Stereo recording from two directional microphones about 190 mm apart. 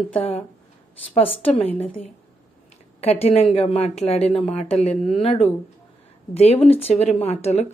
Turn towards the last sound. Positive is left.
turn(degrees=35)  # may be behind; listen again after turning